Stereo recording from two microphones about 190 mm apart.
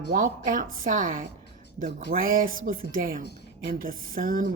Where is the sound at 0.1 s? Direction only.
45° right (ahead or behind).